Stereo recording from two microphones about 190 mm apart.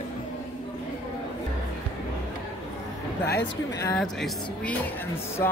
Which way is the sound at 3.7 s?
15° left (ahead or behind).